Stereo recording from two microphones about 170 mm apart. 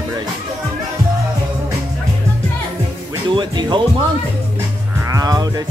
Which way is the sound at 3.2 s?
25° right (ahead or behind).